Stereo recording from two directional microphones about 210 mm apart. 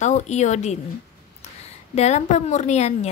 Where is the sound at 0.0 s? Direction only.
35° left (ahead or behind).